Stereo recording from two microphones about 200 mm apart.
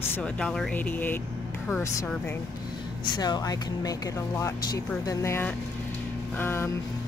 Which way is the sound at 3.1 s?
20° left (ahead or behind).